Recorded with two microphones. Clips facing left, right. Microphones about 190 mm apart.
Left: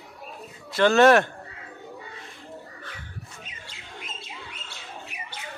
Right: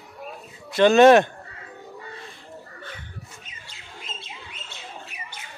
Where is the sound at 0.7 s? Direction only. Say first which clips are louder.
Right 4 dB; 20° right (ahead or behind).